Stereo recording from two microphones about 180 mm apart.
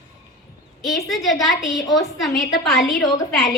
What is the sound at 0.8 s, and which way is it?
A woman's voice, centre (ahead or behind).